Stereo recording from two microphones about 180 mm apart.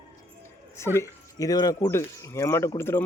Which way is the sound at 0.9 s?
20° left (ahead or behind).